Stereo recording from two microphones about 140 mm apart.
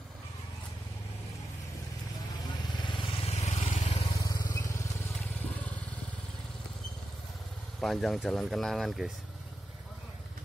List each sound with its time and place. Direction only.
2.7 s vehicle: 35° left (ahead or behind)
3.3 s vehicle: 50° left (ahead or behind)
3.9 s vehicle: 30° left (ahead or behind)
7.8 s speech: centre (ahead or behind)